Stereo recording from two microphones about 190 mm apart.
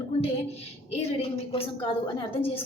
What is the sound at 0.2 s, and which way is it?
A woman's voice, 30° left (ahead or behind).